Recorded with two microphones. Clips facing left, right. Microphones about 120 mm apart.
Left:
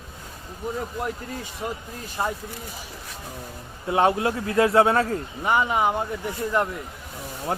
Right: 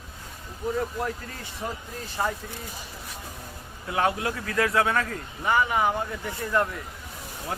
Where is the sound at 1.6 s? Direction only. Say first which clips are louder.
Even; 15° left (ahead or behind).